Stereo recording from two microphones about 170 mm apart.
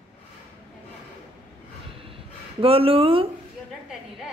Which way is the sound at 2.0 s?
35° right (ahead or behind).